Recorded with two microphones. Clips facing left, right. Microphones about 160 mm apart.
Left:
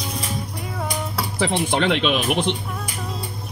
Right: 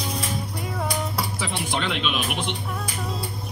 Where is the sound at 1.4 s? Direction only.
60° left (ahead or behind).